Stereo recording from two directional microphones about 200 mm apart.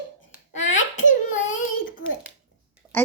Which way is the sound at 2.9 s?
10° left (ahead or behind).